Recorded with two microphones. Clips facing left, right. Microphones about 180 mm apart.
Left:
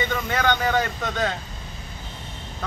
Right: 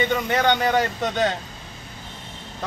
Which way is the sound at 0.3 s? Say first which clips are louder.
Right 1 dB; 20° right (ahead or behind).